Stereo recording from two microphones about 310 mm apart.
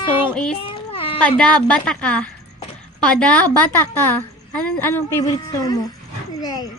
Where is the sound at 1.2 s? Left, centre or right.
Centre.